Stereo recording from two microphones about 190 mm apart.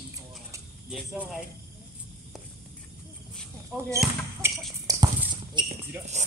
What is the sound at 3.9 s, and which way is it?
Speech, 15° right (ahead or behind).